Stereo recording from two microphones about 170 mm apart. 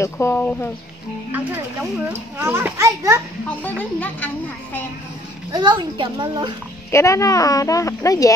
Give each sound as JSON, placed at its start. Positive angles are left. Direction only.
{"t": 0.0, "sound": "a woman's voice", "side_deg": 15}
{"t": 1.3, "sound": "a child's voice", "side_deg": -10}
{"t": 3.4, "sound": "a woman's voice", "side_deg": 10}
{"t": 5.5, "sound": "a child's voice", "side_deg": -25}
{"t": 6.9, "sound": "speech", "side_deg": 15}